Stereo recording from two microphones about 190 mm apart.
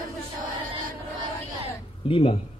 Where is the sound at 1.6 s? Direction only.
30° left (ahead or behind).